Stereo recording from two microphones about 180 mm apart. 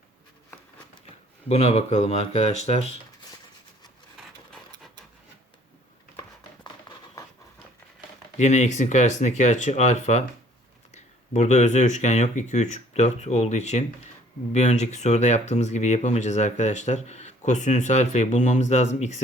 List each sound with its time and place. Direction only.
1.5 s speech: 35° left (ahead or behind)
6.9 s a sound: 25° left (ahead or behind)
8.4 s speech: 40° left (ahead or behind)